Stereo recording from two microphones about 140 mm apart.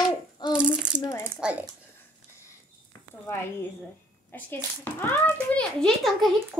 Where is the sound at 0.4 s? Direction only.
30° left (ahead or behind).